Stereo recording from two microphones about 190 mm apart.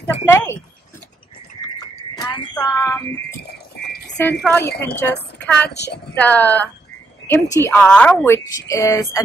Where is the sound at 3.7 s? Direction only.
60° left (ahead or behind).